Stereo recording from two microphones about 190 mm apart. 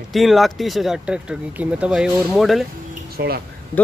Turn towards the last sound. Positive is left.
turn(degrees=-55)  # may be behind; listen again after turning